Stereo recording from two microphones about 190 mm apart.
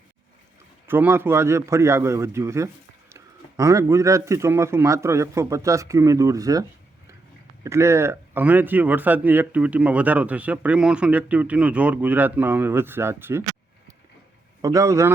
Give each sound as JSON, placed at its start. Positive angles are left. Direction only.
{"t": 0.9, "sound": "a man's voice", "side_deg": -10}
{"t": 14.6, "sound": "a man's voice", "side_deg": -15}